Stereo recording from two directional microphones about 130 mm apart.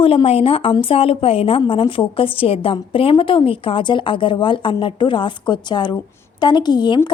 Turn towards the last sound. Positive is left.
turn(degrees=35)  # may be behind; listen again after turning